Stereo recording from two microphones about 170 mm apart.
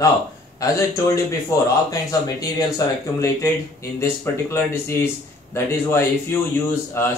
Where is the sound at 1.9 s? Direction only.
20° left (ahead or behind).